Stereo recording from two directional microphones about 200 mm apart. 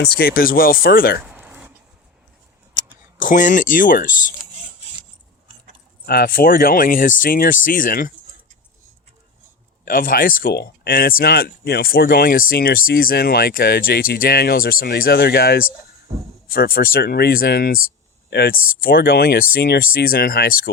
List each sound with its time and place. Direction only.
0.0 s speech: 50° left (ahead or behind)
1.2 s a sound: 10° right (ahead or behind)
2.7 s mechanisms: 40° left (ahead or behind)
6.1 s speech: 50° left (ahead or behind)
9.8 s speech: 45° left (ahead or behind)